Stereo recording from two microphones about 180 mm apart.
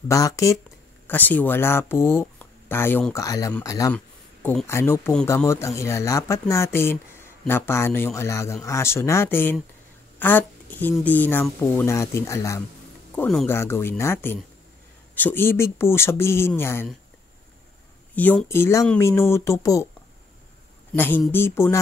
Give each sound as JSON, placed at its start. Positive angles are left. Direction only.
{"t": 0.1, "sound": "speech", "side_deg": 20}
{"t": 3.9, "sound": "speech", "side_deg": 10}
{"t": 13.1, "sound": "speech", "side_deg": 5}
{"t": 18.1, "sound": "speech", "side_deg": 10}
{"t": 20.9, "sound": "speech", "side_deg": 10}